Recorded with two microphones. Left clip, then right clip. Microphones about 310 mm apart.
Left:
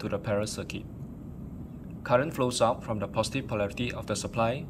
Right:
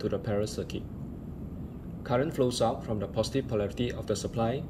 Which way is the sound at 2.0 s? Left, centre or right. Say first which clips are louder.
Left 2 dB; centre.